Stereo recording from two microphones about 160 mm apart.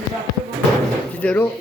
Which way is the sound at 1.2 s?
10° left (ahead or behind).